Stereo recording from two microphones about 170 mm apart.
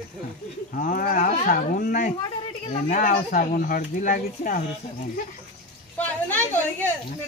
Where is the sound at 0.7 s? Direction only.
55° left (ahead or behind).